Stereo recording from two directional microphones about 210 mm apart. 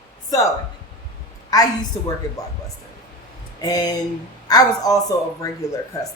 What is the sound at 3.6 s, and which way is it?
A woman's voice, 15° left (ahead or behind).